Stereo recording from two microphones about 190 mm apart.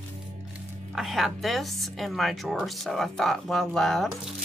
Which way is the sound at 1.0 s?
Centre (ahead or behind).